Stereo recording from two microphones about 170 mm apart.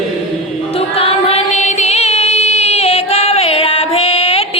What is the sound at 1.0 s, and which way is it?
Music, 35° left (ahead or behind).